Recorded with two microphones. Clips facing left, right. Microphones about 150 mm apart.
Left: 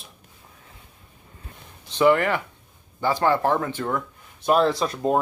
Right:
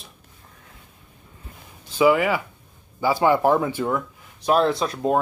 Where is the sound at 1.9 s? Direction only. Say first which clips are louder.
Right 1 dB; 5° right (ahead or behind).